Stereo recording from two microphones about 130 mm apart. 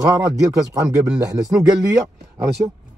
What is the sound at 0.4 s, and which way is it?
Speech, 25° right (ahead or behind).